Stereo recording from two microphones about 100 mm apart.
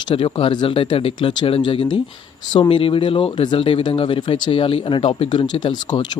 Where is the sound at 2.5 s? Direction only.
45° left (ahead or behind).